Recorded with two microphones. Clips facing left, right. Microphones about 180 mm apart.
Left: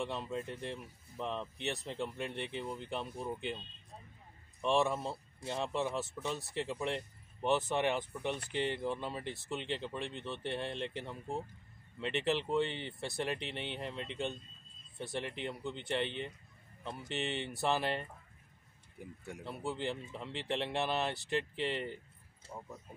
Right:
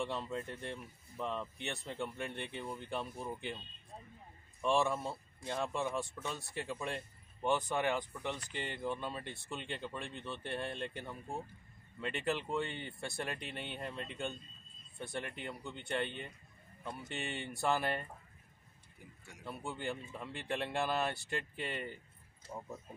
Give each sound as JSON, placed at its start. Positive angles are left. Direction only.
{"t": 0.1, "sound": "speech", "side_deg": 20}
{"t": 4.6, "sound": "a man's voice", "side_deg": 20}
{"t": 19.4, "sound": "speech", "side_deg": 20}
{"t": 22.5, "sound": "speech", "side_deg": -5}